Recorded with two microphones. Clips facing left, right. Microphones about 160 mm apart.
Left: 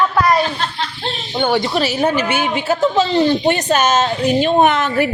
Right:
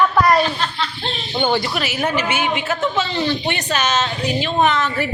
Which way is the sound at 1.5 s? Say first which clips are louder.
Left 6 dB; 20° left (ahead or behind).